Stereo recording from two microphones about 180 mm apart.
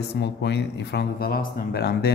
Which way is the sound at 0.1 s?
70° left (ahead or behind).